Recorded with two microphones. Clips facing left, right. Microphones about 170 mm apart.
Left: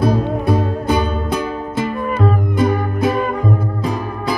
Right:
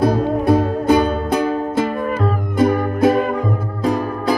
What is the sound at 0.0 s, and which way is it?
Music, 45° right (ahead or behind).